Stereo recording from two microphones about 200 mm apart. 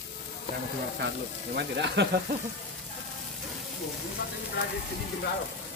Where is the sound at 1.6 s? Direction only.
60° right (ahead or behind).